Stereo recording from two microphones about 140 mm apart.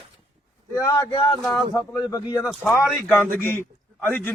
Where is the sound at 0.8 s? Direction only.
25° left (ahead or behind).